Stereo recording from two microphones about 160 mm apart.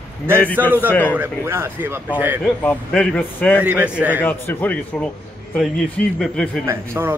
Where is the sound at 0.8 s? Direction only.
10° left (ahead or behind).